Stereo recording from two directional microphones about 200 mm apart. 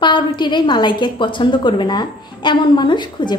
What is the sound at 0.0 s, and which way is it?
A woman's voice, 25° left (ahead or behind).